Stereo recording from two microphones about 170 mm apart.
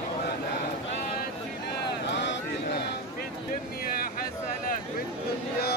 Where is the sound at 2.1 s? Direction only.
90° left.